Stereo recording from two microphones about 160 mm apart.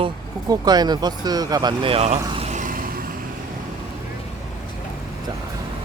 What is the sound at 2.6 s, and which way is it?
Vehicle, 60° right (ahead or behind).